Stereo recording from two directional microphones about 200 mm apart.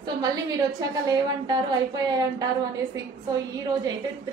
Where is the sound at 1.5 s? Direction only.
20° right (ahead or behind).